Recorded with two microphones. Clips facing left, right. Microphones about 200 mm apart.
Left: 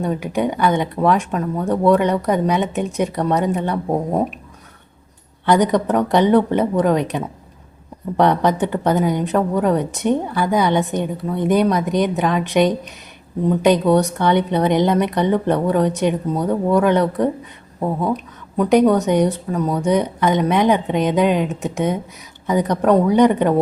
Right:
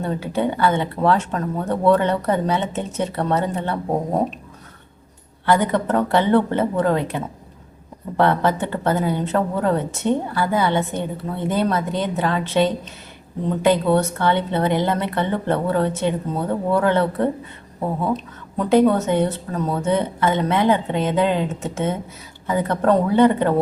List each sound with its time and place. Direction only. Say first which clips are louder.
0.0 s a woman's voice: left 2 dB; 15° left (ahead or behind)
5.5 s a woman's voice: left 3 dB; 15° left (ahead or behind)